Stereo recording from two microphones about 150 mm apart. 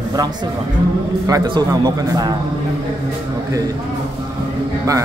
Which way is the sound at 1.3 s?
25° right (ahead or behind).